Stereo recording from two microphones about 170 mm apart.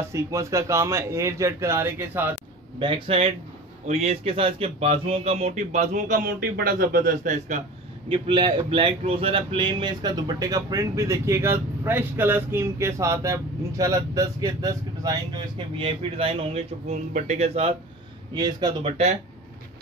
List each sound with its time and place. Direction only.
0.1 s a man's voice: 15° right (ahead or behind)
2.8 s speech: 30° right (ahead or behind)
8.1 s speech: 30° right (ahead or behind)
18.3 s speech: 25° right (ahead or behind)